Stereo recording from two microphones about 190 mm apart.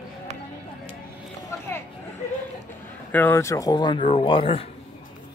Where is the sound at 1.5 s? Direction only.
15° left (ahead or behind).